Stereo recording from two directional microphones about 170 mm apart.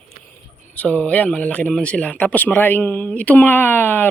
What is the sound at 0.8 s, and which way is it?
A man's voice, 10° left (ahead or behind).